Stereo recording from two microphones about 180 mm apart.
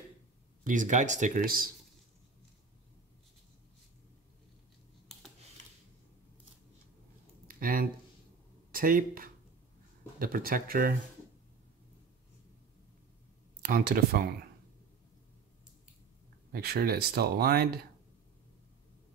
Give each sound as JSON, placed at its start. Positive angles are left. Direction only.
{"t": 0.7, "sound": "speech", "side_deg": -45}
{"t": 7.4, "sound": "a sound", "side_deg": -55}
{"t": 8.7, "sound": "speech", "side_deg": -50}
{"t": 13.6, "sound": "speech", "side_deg": -55}
{"t": 16.5, "sound": "speech", "side_deg": -55}